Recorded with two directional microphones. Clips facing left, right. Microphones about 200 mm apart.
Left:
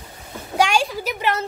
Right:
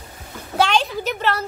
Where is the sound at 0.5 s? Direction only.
10° left (ahead or behind).